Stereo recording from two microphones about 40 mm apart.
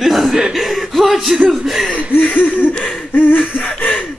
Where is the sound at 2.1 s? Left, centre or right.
Left.